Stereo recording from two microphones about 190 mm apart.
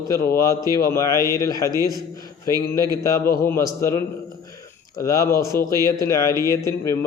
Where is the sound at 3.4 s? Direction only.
15° left (ahead or behind).